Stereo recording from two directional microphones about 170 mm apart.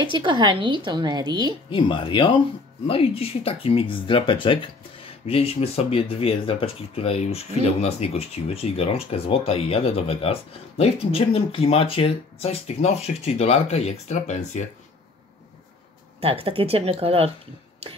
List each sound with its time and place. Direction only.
0.0 s a woman's voice: 30° right (ahead or behind)
1.7 s speech: 30° left (ahead or behind)
16.2 s speech: 35° right (ahead or behind)